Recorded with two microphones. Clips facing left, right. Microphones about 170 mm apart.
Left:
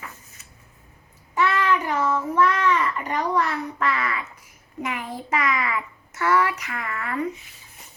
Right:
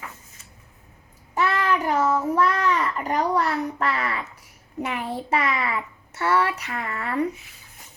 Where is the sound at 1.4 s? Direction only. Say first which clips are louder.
Left 1 dB; 40° right (ahead or behind).